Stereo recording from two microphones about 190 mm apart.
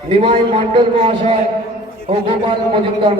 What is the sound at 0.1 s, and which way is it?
A man's voice, 25° right (ahead or behind).